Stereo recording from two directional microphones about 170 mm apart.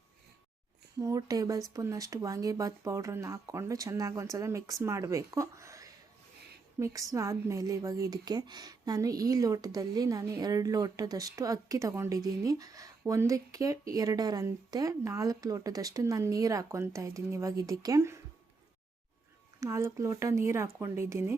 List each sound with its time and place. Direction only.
0.9 s a woman's voice: 20° right (ahead or behind)
19.5 s speech: 15° right (ahead or behind)